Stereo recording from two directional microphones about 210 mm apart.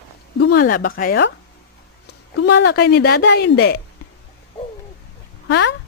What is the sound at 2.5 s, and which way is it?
Speech, 50° left (ahead or behind).